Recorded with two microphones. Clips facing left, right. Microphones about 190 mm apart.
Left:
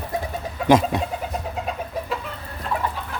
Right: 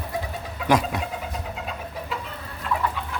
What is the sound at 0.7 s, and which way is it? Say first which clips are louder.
Speech: left 5 dB; 25° left (ahead or behind).